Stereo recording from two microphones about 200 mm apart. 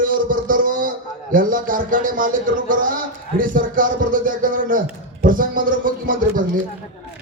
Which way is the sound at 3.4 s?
40° right (ahead or behind).